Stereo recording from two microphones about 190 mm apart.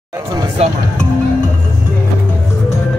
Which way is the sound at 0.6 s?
35° right (ahead or behind).